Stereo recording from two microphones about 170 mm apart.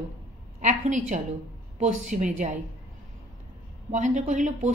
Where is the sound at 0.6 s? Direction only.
45° right (ahead or behind).